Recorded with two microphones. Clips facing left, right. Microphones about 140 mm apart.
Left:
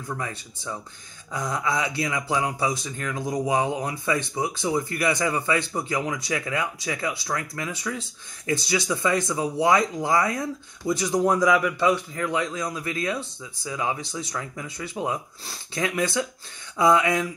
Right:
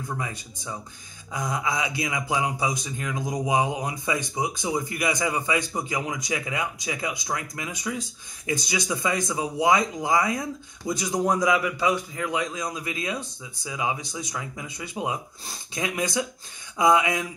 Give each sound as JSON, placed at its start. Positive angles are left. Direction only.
{"t": 0.2, "sound": "speech", "side_deg": -15}